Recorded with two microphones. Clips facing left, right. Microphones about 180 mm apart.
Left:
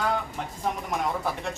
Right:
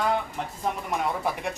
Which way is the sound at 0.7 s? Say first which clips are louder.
Even; centre (ahead or behind).